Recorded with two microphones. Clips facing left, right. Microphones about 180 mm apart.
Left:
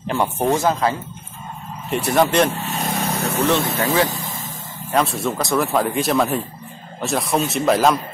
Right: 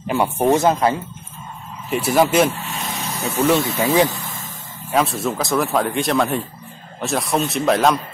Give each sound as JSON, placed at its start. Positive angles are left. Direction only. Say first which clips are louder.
{"t": 0.1, "sound": "speech", "louder": "right 2 dB", "side_deg": -10}
{"t": 0.6, "sound": "speech", "louder": "right 2 dB", "side_deg": -20}
{"t": 1.9, "sound": "speech", "louder": "right 1 dB", "side_deg": -5}
{"t": 2.7, "sound": "vehicle", "louder": "left 5 dB", "side_deg": 55}
{"t": 3.4, "sound": "speech", "louder": "right 3 dB", "side_deg": -10}
{"t": 4.9, "sound": "speech", "louder": "even", "side_deg": 0}